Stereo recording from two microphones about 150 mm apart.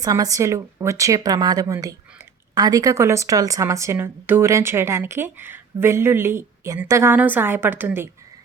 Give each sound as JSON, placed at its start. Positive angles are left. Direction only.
{"t": 0.0, "sound": "a woman's voice", "side_deg": -25}